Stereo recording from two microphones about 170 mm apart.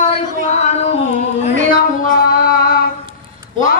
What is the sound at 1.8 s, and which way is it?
Female singing, 60° left (ahead or behind).